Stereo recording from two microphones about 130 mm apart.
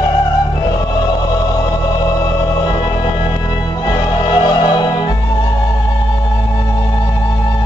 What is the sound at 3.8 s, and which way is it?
Music, 30° left (ahead or behind).